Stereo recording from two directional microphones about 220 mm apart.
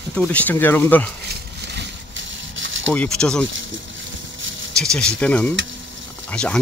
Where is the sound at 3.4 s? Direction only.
55° right (ahead or behind).